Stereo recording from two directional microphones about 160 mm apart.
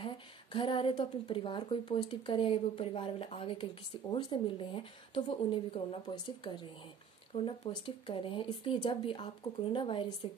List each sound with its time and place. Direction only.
0.0 s a woman's voice: 30° left (ahead or behind)